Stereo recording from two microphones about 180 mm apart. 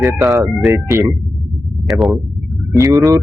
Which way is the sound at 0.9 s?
15° right (ahead or behind).